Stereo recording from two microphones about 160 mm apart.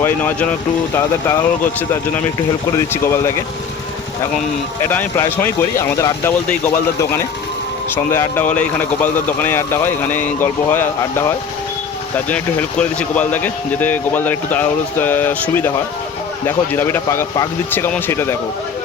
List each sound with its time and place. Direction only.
0.0 s speech: 10° left (ahead or behind)
4.8 s speech: 15° left (ahead or behind)
7.9 s speech: 15° left (ahead or behind)